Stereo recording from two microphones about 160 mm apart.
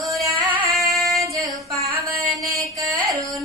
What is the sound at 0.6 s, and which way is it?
Female singing, centre (ahead or behind).